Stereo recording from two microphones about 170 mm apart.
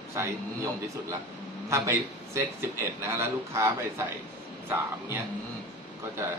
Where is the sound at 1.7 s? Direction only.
15° right (ahead or behind).